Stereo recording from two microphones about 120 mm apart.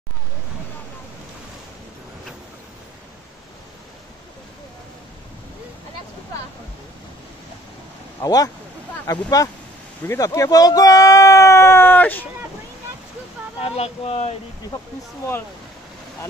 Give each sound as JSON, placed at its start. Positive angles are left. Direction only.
{"t": 8.2, "sound": "speech", "side_deg": 30}
{"t": 10.0, "sound": "a sound", "side_deg": 25}
{"t": 13.6, "sound": "speech", "side_deg": 55}
{"t": 14.7, "sound": "speech", "side_deg": 20}